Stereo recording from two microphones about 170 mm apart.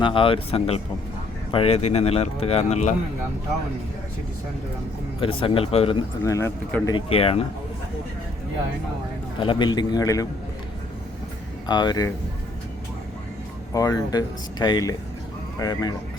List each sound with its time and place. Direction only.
0.0 s speech: 30° left (ahead or behind)
5.2 s speech: 30° left (ahead or behind)
6.2 s speech: 15° left (ahead or behind)
6.8 s speech: 30° left (ahead or behind)
9.4 s speech: 30° left (ahead or behind)
11.6 s speech: 25° left (ahead or behind)
13.7 s speech: 20° left (ahead or behind)